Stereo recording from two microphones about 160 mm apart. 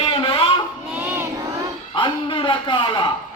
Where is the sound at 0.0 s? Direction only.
35° left (ahead or behind).